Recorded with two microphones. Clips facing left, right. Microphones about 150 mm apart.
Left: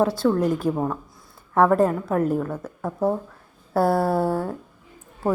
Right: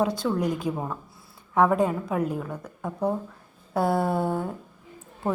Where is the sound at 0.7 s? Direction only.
50° left (ahead or behind).